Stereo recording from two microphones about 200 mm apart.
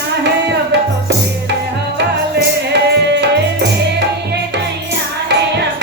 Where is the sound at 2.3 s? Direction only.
55° right (ahead or behind).